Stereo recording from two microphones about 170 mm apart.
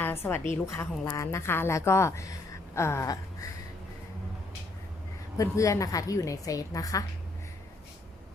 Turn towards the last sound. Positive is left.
turn(degrees=20)  # may be behind; listen again after turning